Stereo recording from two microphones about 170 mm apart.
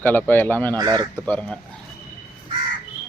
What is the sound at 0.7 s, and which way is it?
Speech, 25° right (ahead or behind).